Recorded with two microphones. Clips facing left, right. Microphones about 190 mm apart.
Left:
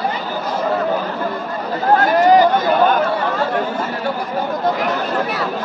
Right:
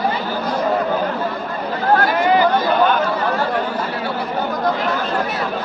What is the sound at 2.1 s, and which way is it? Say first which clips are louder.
Chatter: left 4 dB; 40° left (ahead or behind).